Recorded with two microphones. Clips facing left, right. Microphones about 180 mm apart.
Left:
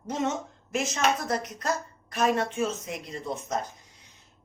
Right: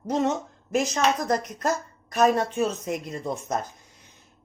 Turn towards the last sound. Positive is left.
turn(degrees=-45)  # may be behind; listen again after turning